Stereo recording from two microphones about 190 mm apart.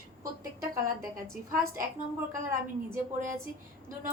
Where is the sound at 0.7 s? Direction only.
15° right (ahead or behind).